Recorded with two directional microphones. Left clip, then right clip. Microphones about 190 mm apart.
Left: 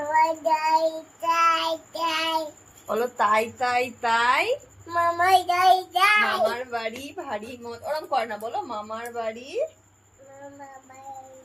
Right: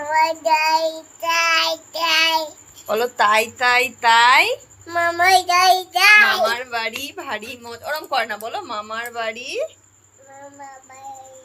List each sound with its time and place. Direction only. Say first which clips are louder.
0.1 s child singing: right 4 dB; 15° left (ahead or behind)
2.8 s a woman's voice: right 6 dB; 15° right (ahead or behind)
4.9 s a child's voice: right 4 dB; 10° left (ahead or behind)
6.5 s a woman's voice: right 6 dB; 20° right (ahead or behind)